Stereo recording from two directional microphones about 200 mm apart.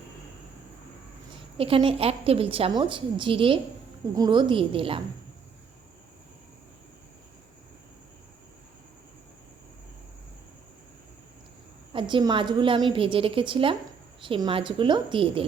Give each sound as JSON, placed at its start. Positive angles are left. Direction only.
{"t": 1.5, "sound": "a woman's voice", "side_deg": -25}
{"t": 11.9, "sound": "a woman's voice", "side_deg": -25}